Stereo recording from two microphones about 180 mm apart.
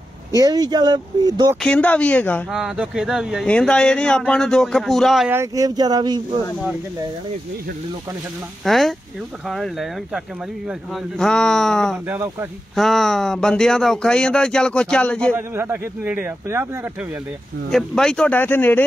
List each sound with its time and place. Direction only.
0.3 s speech: 20° right (ahead or behind)
1.6 s speech: 5° left (ahead or behind)
2.5 s speech: 5° right (ahead or behind)
5.3 s speech: 15° right (ahead or behind)
8.6 s speech: centre (ahead or behind)
12.1 s a man's voice: 15° right (ahead or behind)
12.7 s speech: centre (ahead or behind)
15.3 s a man's voice: 10° right (ahead or behind)
17.6 s speech: 5° left (ahead or behind)